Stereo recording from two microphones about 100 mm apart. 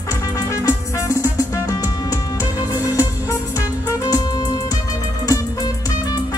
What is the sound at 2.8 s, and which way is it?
Music, 35° left (ahead or behind).